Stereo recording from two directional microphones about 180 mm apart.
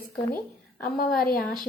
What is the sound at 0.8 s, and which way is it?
Speech, 55° left (ahead or behind).